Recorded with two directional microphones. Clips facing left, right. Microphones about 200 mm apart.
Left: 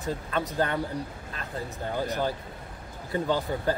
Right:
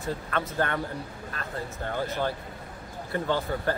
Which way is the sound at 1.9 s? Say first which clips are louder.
Left 1 dB; 10° left (ahead or behind).